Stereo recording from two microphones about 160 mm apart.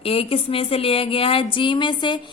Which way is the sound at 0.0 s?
35° left (ahead or behind).